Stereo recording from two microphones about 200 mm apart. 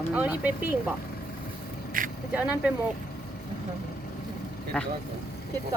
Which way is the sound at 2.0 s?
45° right (ahead or behind).